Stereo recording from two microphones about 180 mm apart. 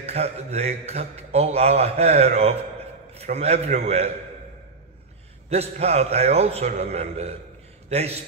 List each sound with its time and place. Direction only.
0.0 s a man's voice: 35° right (ahead or behind)
5.5 s a man's voice: 35° right (ahead or behind)